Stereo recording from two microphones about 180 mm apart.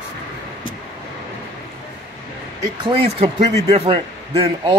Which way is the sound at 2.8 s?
30° right (ahead or behind).